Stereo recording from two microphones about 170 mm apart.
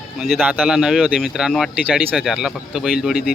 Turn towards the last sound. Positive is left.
turn(degrees=-5)  # may be behind; listen again after turning